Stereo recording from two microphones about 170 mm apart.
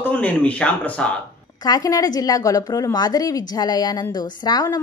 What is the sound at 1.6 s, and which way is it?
Speech, 20° left (ahead or behind).